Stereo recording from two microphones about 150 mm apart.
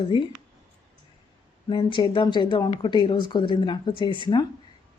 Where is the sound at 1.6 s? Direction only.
30° left (ahead or behind).